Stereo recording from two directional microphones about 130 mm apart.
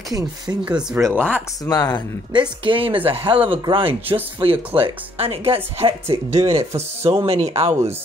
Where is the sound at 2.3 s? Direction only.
40° right (ahead or behind).